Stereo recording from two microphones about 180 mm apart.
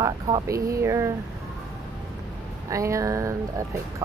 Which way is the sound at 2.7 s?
15° right (ahead or behind).